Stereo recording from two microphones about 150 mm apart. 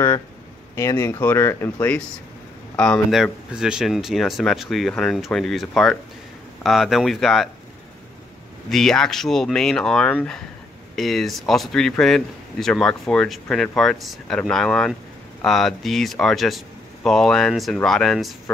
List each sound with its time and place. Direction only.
0.7 s speech: 20° left (ahead or behind); by 7.4 s centre (ahead or behind)
8.6 s speech: centre (ahead or behind)